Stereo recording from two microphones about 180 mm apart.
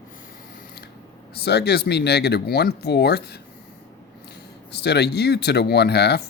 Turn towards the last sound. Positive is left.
turn(degrees=65)  # may be behind; listen again after turning